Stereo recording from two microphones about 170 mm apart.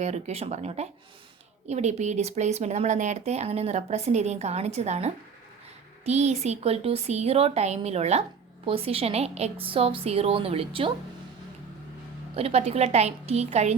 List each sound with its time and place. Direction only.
0.0 s speech: 40° right (ahead or behind)
12.4 s speech: 40° right (ahead or behind)